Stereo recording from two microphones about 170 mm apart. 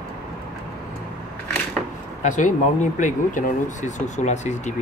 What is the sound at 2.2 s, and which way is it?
Speech, 50° left (ahead or behind).